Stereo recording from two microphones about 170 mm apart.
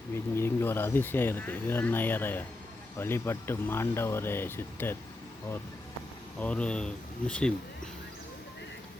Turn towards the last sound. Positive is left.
turn(degrees=5)  # may be behind; listen again after turning